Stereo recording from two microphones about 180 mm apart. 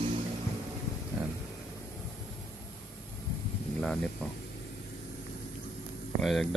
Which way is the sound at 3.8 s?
5° left (ahead or behind).